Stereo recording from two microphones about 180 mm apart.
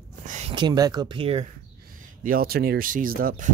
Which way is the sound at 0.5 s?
25° right (ahead or behind).